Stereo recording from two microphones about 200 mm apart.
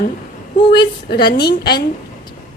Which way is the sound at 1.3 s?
55° left (ahead or behind).